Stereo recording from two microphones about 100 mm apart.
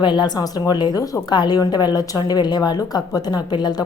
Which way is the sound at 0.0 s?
50° left (ahead or behind).